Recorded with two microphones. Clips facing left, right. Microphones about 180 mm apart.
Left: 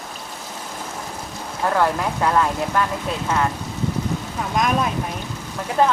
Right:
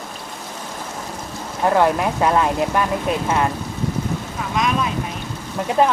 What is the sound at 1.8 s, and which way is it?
Speech, 20° right (ahead or behind).